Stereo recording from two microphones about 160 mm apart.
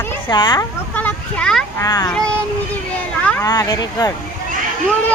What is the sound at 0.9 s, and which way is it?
Speech, 10° left (ahead or behind).